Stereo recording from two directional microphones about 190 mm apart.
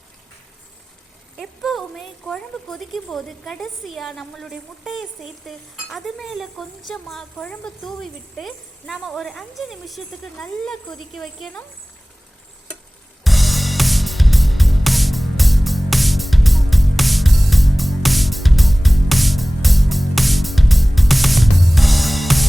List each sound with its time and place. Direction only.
1.4 s a woman's voice: centre (ahead or behind)
13.2 s music: centre (ahead or behind)